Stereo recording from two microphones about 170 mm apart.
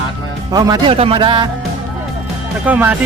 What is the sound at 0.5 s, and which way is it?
Speech, 25° right (ahead or behind).